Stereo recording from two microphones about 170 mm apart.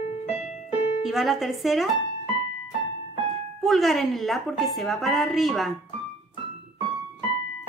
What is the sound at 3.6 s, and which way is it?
Speech, centre (ahead or behind).